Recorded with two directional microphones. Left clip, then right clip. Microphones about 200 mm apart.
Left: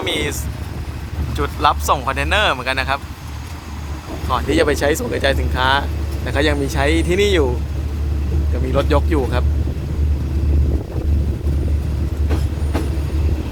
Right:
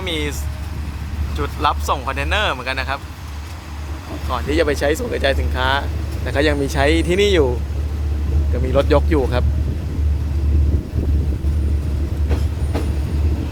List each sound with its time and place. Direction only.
0.0 s speech: 5° left (ahead or behind)
1.4 s speech: 5° left (ahead or behind)
4.3 s speech: 5° left (ahead or behind); by 7.5 s 15° right (ahead or behind)
8.7 s speech: 20° right (ahead or behind)